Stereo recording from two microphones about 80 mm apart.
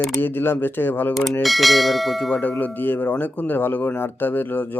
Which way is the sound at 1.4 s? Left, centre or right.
Centre.